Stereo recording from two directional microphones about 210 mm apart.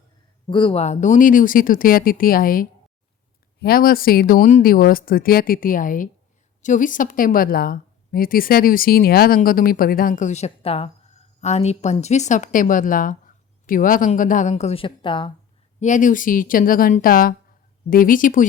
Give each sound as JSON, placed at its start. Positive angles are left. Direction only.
{"t": 0.5, "sound": "a woman's voice", "side_deg": 25}
{"t": 15.8, "sound": "a woman's voice", "side_deg": 35}